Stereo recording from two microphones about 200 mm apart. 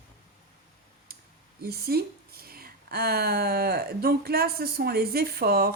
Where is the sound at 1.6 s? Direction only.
50° right (ahead or behind).